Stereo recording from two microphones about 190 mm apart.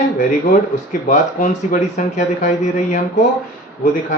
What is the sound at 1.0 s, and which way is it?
Speech, 40° left (ahead or behind).